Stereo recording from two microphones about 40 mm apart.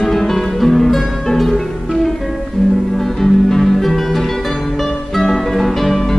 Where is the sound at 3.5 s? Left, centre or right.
Centre.